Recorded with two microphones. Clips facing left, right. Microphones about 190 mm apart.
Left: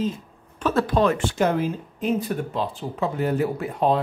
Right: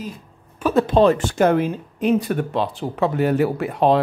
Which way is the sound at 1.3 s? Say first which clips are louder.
Right 4 dB; 55° right (ahead or behind).